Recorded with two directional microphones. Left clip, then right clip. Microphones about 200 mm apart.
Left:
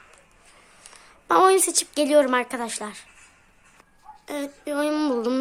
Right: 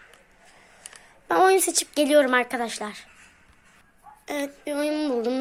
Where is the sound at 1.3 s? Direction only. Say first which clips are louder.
Left 2 dB; 10° left (ahead or behind).